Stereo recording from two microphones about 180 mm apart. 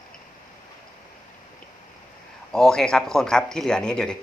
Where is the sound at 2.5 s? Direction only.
5° left (ahead or behind).